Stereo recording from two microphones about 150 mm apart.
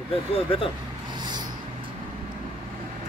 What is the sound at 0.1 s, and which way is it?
Speech, 40° left (ahead or behind).